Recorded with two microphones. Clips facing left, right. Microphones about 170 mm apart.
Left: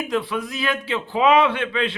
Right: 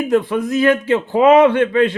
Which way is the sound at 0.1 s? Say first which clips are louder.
Right 11 dB; 45° right (ahead or behind).